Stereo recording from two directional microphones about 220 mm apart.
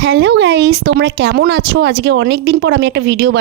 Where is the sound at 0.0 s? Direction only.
55° right (ahead or behind).